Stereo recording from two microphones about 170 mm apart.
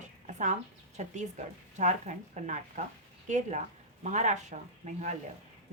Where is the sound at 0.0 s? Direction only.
45° right (ahead or behind).